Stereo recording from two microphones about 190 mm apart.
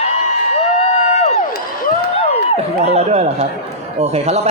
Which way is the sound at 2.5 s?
35° right (ahead or behind).